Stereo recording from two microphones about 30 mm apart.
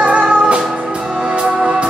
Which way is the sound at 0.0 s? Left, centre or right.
Right.